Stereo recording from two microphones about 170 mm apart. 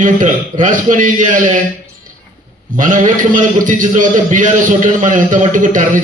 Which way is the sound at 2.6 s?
50° right (ahead or behind).